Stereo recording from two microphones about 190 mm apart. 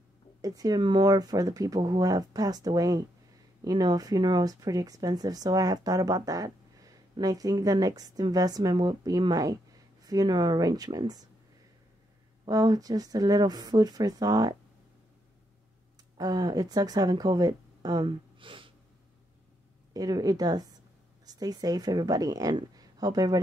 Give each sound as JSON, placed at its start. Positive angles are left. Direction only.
{"t": 0.4, "sound": "speech", "side_deg": -20}
{"t": 12.4, "sound": "speech", "side_deg": -20}
{"t": 16.2, "sound": "speech", "side_deg": -20}
{"t": 19.9, "sound": "speech", "side_deg": -20}